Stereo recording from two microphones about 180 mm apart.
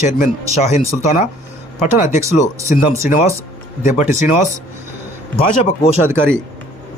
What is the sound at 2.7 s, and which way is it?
Speech, 45° left (ahead or behind).